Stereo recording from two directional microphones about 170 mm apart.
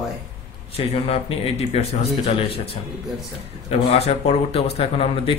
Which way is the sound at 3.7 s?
35° left (ahead or behind).